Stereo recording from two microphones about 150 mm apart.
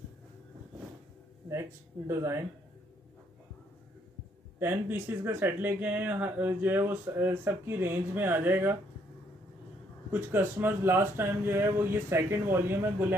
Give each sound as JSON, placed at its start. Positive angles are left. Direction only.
{"t": 1.5, "sound": "speech", "side_deg": -15}
{"t": 4.6, "sound": "speech", "side_deg": -15}
{"t": 10.1, "sound": "speech", "side_deg": -15}